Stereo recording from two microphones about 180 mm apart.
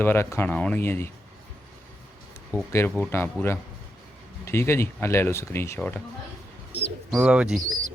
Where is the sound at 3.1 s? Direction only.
15° left (ahead or behind).